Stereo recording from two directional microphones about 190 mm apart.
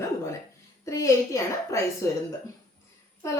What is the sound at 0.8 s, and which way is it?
Speech, 15° left (ahead or behind).